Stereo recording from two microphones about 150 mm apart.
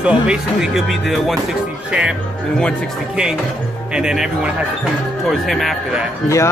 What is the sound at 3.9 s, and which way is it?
Speech, 5° right (ahead or behind).